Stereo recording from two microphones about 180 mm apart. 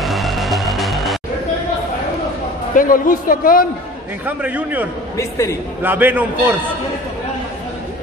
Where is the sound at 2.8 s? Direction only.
50° left (ahead or behind).